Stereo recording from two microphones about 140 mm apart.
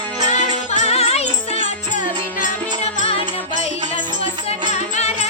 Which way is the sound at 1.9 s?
65° left (ahead or behind).